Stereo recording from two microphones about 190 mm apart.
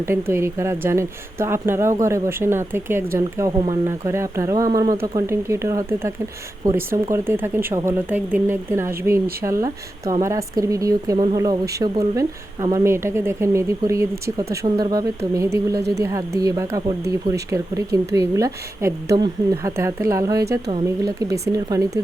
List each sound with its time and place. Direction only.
0.0 s a woman's voice: 15° right (ahead or behind)